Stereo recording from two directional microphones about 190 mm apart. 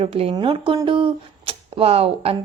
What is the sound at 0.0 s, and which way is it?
A woman's voice, 30° right (ahead or behind).